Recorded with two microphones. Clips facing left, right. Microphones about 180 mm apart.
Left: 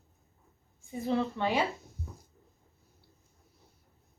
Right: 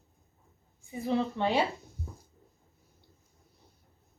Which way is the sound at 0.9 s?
15° right (ahead or behind).